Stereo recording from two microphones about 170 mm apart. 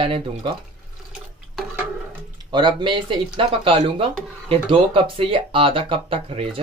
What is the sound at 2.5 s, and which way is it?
Speech, 25° right (ahead or behind).